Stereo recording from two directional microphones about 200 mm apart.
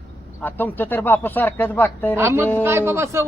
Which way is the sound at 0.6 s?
10° left (ahead or behind).